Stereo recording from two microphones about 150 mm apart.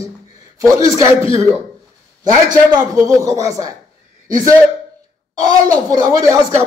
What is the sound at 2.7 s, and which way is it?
A man's voice, 20° right (ahead or behind).